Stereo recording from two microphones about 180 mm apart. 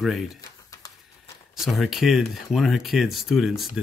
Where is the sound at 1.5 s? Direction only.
Centre (ahead or behind).